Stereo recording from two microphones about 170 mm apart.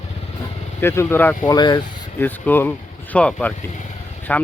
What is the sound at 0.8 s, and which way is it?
Speech, 15° left (ahead or behind).